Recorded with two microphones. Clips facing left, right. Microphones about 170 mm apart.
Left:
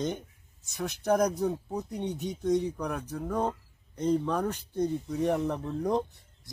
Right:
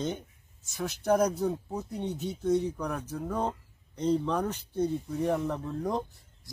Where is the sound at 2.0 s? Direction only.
15° left (ahead or behind).